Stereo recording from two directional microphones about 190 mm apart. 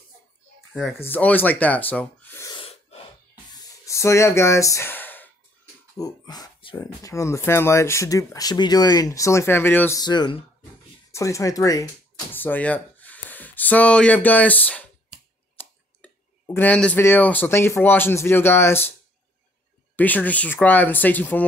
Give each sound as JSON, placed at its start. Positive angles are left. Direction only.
{"t": 1.0, "sound": "speech", "side_deg": 10}
{"t": 2.5, "sound": "gasp", "side_deg": 30}
{"t": 3.5, "sound": "sigh", "side_deg": 15}
{"t": 5.9, "sound": "speech", "side_deg": 20}
{"t": 20.0, "sound": "speech", "side_deg": 10}